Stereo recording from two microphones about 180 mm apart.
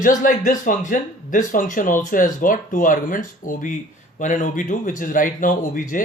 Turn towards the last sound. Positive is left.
turn(degrees=45)  # may be behind; listen again after turning